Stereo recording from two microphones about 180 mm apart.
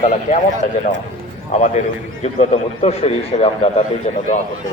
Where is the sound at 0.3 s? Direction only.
40° left (ahead or behind).